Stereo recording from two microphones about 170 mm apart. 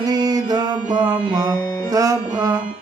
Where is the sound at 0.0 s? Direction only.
20° right (ahead or behind).